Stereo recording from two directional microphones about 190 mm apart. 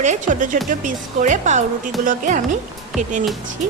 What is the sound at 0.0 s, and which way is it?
Speech, 40° right (ahead or behind).